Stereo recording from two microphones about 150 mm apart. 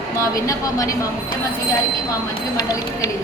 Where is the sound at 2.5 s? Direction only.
25° left (ahead or behind).